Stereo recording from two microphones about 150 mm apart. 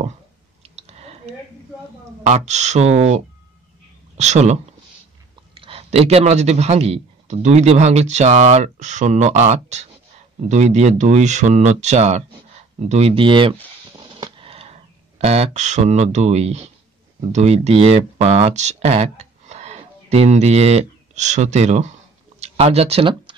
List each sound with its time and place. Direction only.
0.7 s a sound: 45° right (ahead or behind)
2.2 s a man's voice: 50° right (ahead or behind)
4.2 s a man's voice: 50° right (ahead or behind)
5.6 s a man's voice: 40° right (ahead or behind)
13.9 s a sound: 35° right (ahead or behind)
17.3 s speech: 45° right (ahead or behind)